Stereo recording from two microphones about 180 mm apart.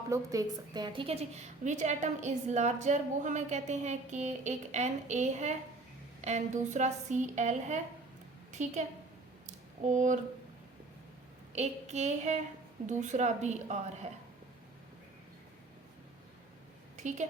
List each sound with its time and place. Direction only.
0.1 s a woman's voice: 20° right (ahead or behind); by 8.7 s 40° right (ahead or behind)
9.5 s a sound: 45° right (ahead or behind)
11.5 s a woman's voice: 40° right (ahead or behind)
17.0 s a woman's voice: 40° right (ahead or behind)